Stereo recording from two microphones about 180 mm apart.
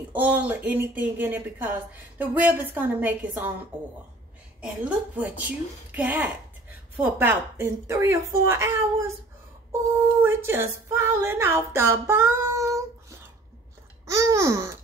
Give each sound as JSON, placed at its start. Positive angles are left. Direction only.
{"t": 0.1, "sound": "speech", "side_deg": -10}
{"t": 4.6, "sound": "speech", "side_deg": -5}
{"t": 14.0, "sound": "speech", "side_deg": -15}